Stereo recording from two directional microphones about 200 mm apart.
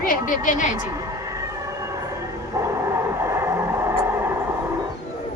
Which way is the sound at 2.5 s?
15° right (ahead or behind).